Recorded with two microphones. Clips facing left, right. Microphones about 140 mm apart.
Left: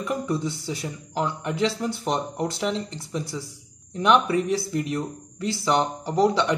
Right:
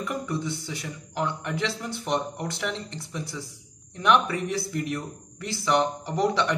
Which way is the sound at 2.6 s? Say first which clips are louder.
Left 5 dB; 25° left (ahead or behind).